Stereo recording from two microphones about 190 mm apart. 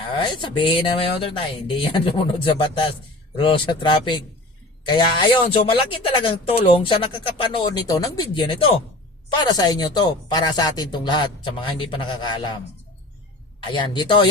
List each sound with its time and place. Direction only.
0.2 s speech: 25° left (ahead or behind)
13.7 s speech: 25° left (ahead or behind)